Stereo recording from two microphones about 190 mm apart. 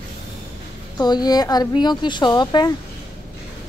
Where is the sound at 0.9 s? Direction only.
20° left (ahead or behind).